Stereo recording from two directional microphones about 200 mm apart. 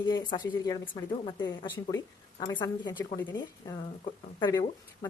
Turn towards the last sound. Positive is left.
turn(degrees=20)  # may be behind; listen again after turning